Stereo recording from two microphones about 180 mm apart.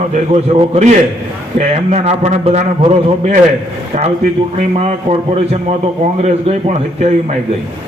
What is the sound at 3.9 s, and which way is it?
Speech, 40° right (ahead or behind).